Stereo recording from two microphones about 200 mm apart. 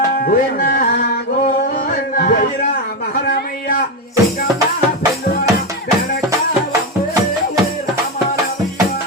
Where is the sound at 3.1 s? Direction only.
50° left (ahead or behind).